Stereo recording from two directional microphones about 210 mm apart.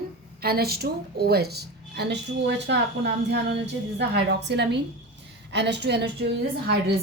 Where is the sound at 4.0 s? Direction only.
55° right (ahead or behind).